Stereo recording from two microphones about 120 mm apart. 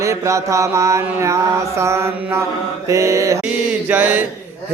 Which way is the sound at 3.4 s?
15° right (ahead or behind).